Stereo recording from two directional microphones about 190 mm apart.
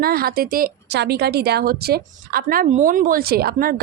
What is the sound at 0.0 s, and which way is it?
A woman's voice, 50° right (ahead or behind).